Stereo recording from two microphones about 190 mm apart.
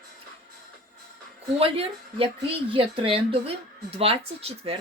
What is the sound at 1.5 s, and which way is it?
Speech, 30° right (ahead or behind).